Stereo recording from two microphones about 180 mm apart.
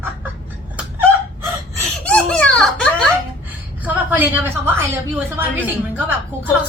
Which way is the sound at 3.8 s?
10° right (ahead or behind).